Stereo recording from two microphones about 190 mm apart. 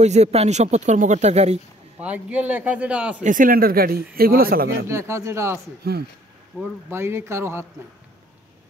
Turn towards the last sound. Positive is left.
turn(degrees=-15)  # may be behind; listen again after turning